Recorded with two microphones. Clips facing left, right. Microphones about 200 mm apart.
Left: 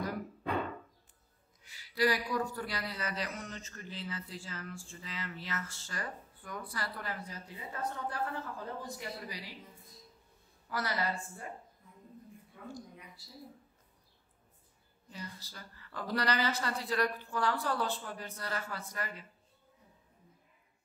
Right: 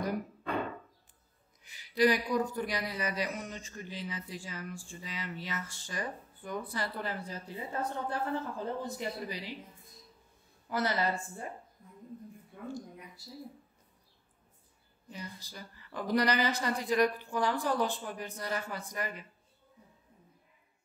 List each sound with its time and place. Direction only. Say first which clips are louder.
1.6 s a man's voice: right 4 dB; 20° right (ahead or behind)
10.7 s speech: right 4 dB; 25° right (ahead or behind)
15.0 s a man's voice: right 2 dB; 15° right (ahead or behind)